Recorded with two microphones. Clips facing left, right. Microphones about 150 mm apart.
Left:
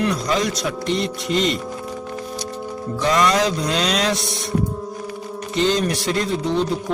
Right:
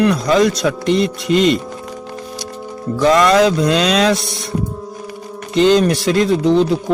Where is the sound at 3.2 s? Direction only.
60° right (ahead or behind).